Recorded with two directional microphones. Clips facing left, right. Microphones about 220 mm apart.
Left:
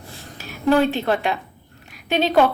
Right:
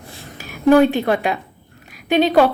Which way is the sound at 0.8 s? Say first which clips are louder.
Right 4 dB; 15° right (ahead or behind).